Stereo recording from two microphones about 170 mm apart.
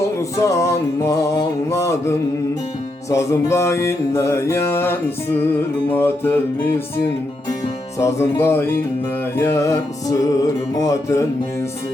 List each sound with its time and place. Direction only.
0.0 s music: 20° left (ahead or behind)
7.9 s music: 15° left (ahead or behind)